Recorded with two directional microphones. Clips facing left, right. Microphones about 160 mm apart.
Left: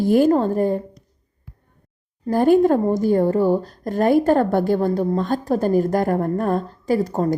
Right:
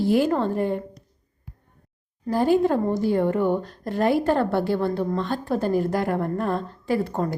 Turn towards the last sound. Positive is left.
turn(degrees=40)  # may be behind; listen again after turning